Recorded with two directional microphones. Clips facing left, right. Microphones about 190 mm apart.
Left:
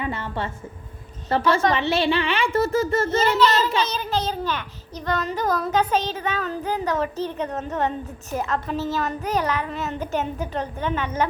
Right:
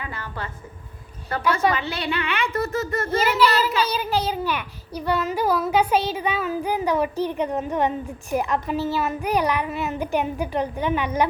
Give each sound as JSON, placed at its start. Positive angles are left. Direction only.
{"t": 0.0, "sound": "a child's voice", "side_deg": 25}
{"t": 3.2, "sound": "a child's voice", "side_deg": -10}